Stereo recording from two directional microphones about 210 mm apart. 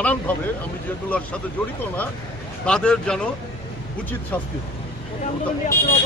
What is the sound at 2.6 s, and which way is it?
Speech, 5° left (ahead or behind).